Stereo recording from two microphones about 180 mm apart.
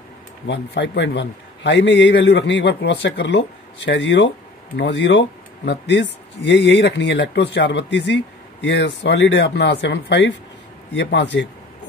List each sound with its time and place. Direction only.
0.5 s a man's voice: 85° left